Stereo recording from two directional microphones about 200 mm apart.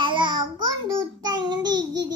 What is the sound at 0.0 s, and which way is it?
Child singing, 25° right (ahead or behind).